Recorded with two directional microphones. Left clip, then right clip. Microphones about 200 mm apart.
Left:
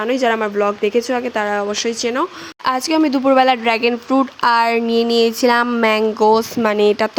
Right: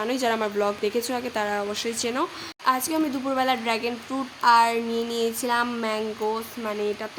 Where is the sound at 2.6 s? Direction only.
45° left (ahead or behind).